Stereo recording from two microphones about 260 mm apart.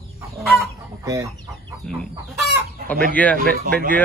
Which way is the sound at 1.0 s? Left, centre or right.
Centre.